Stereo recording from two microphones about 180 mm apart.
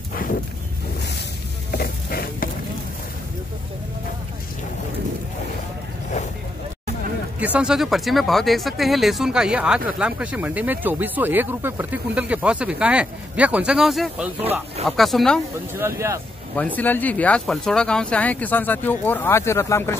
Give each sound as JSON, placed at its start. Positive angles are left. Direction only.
{"t": 0.1, "sound": "a sound", "side_deg": 50}
{"t": 1.7, "sound": "a sound", "side_deg": 60}
{"t": 7.3, "sound": "speech", "side_deg": -5}
{"t": 14.4, "sound": "speech", "side_deg": -35}
{"t": 14.9, "sound": "speech", "side_deg": 0}
{"t": 15.7, "sound": "speech", "side_deg": -15}
{"t": 16.5, "sound": "speech", "side_deg": 10}